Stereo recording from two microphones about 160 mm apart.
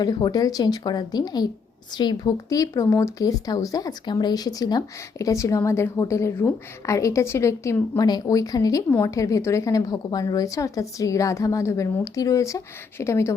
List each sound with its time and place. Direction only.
0.0 s speech: 25° left (ahead or behind)